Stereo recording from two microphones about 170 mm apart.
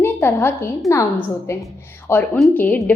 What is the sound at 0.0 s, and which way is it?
A woman's voice, 15° left (ahead or behind).